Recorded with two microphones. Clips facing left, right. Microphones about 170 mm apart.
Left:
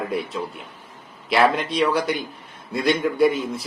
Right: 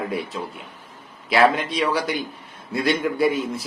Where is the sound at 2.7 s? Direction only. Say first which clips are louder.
Left 1 dB; centre (ahead or behind).